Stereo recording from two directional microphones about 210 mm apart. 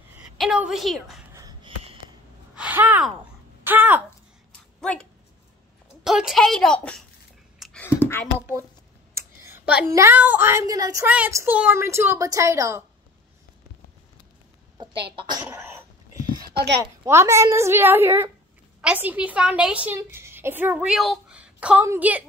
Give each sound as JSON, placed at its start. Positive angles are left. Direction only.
{"t": 0.2, "sound": "a woman's voice", "side_deg": -5}
{"t": 1.3, "sound": "a sound", "side_deg": -15}
{"t": 2.5, "sound": "gasp", "side_deg": -5}
{"t": 3.6, "sound": "speech", "side_deg": -10}
{"t": 4.7, "sound": "speech", "side_deg": 5}
{"t": 6.0, "sound": "a woman's voice", "side_deg": 0}
{"t": 7.5, "sound": "a sound", "side_deg": 0}
{"t": 7.8, "sound": "a sound", "side_deg": 10}
{"t": 8.4, "sound": "speech", "side_deg": -10}
{"t": 15.1, "sound": "cough", "side_deg": -20}
{"t": 16.4, "sound": "a sound", "side_deg": -50}
{"t": 17.0, "sound": "speech", "side_deg": -10}